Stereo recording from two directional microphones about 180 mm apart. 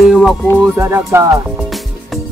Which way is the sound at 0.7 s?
15° right (ahead or behind).